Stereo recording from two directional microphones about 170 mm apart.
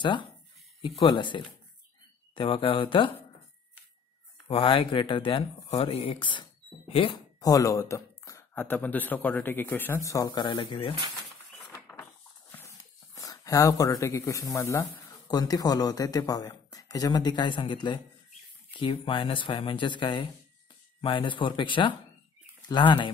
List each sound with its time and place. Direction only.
0.9 s speech: 30° left (ahead or behind)
4.5 s speech: 30° left (ahead or behind)
7.3 s speech: 20° left (ahead or behind)
11.7 s speech: 15° left (ahead or behind)